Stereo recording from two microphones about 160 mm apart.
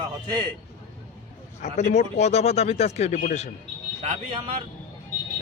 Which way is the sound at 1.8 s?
45° left (ahead or behind).